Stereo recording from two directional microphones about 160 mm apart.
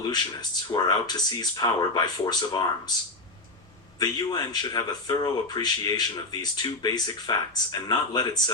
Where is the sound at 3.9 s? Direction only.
25° left (ahead or behind).